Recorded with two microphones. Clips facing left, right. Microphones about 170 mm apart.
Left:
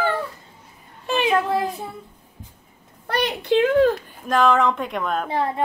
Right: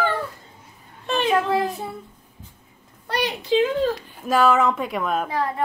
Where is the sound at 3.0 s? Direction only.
55° left (ahead or behind).